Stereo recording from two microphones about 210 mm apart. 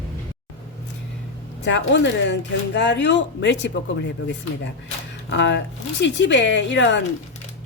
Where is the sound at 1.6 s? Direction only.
60° left (ahead or behind).